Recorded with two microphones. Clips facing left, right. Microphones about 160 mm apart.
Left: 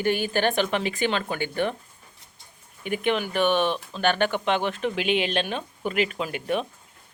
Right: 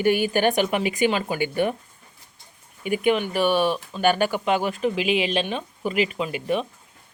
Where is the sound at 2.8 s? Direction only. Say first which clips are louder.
Right 4 dB; 5° right (ahead or behind).